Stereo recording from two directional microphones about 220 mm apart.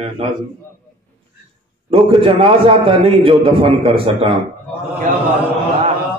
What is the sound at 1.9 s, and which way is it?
Mantra, 25° right (ahead or behind).